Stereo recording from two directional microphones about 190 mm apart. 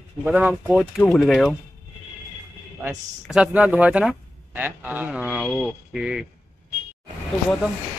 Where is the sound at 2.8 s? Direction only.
5° right (ahead or behind).